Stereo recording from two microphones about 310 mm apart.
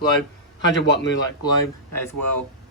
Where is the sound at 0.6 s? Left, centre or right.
Left.